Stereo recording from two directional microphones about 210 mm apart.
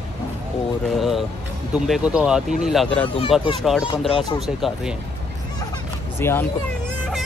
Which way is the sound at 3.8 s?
25° left (ahead or behind).